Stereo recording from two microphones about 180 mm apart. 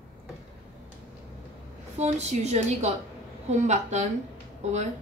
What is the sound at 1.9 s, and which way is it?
A woman's voice, 40° right (ahead or behind).